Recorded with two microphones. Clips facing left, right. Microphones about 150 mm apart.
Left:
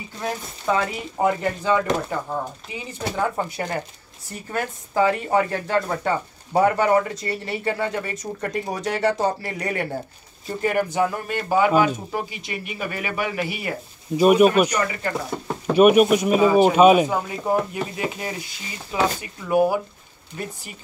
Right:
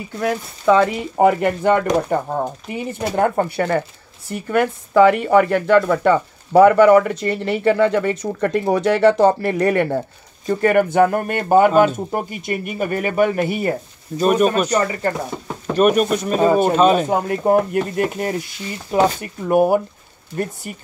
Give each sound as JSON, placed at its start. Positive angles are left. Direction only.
{"t": 0.2, "sound": "speech", "side_deg": -90}
{"t": 1.1, "sound": "speech", "side_deg": -60}
{"t": 14.1, "sound": "speech", "side_deg": 10}
{"t": 14.7, "sound": "speech", "side_deg": -35}
{"t": 15.1, "sound": "speech", "side_deg": 0}
{"t": 17.1, "sound": "speech", "side_deg": -55}